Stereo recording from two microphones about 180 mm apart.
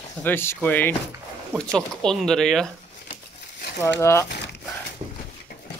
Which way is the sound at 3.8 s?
15° left (ahead or behind).